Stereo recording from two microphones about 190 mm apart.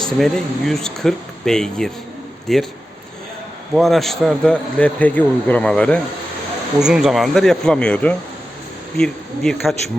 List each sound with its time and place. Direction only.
0.0 s a man's voice: centre (ahead or behind)
3.8 s a man's voice: centre (ahead or behind)